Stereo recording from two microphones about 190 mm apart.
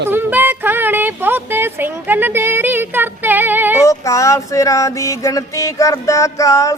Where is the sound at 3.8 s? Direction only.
15° left (ahead or behind).